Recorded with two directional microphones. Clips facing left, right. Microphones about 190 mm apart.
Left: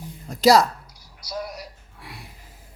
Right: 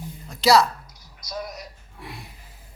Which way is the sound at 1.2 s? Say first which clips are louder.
Left 1 dB; 10° left (ahead or behind).